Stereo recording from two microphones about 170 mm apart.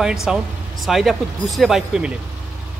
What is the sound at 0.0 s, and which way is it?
Speech, 5° right (ahead or behind).